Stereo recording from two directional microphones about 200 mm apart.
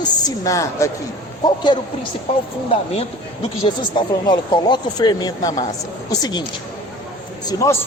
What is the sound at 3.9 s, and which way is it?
A man's voice, 20° left (ahead or behind).